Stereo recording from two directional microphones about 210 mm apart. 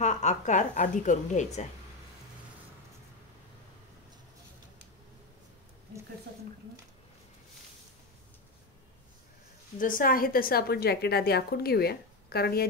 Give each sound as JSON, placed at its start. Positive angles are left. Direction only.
{"t": 0.0, "sound": "a woman's voice", "side_deg": 35}
{"t": 9.8, "sound": "a woman's voice", "side_deg": 40}